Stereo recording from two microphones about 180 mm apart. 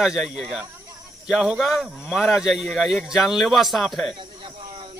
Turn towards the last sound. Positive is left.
turn(degrees=0)  # may be behind; listen again after turning